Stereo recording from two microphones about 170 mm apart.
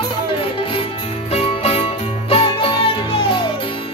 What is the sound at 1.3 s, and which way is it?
Music, 35° left (ahead or behind).